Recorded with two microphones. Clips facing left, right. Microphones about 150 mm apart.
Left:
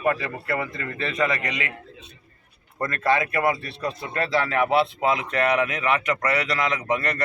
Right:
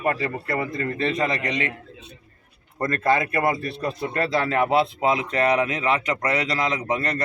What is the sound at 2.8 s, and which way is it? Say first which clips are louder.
Speech: right 1 dB; 35° right (ahead or behind).